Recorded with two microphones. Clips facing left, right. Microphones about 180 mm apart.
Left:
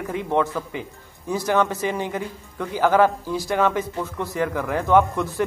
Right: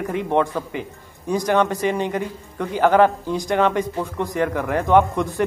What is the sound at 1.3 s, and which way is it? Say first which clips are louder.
A man's voice: right 2 dB; 15° right (ahead or behind).